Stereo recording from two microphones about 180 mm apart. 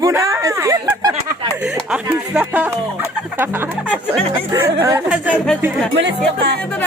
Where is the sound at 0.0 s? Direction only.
15° right (ahead or behind).